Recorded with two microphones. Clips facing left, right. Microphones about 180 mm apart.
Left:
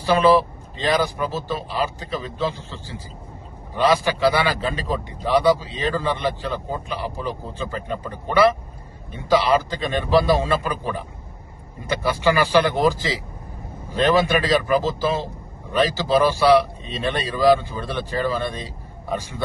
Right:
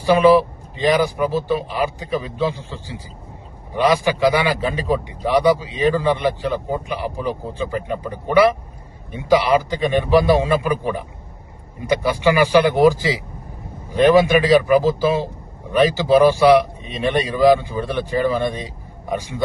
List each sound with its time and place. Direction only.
0.0 s a man's voice: 15° right (ahead or behind)